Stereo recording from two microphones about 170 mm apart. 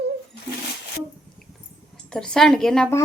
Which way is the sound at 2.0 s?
5° left (ahead or behind).